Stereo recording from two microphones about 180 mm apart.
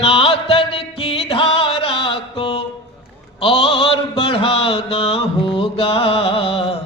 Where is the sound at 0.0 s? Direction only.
35° left (ahead or behind).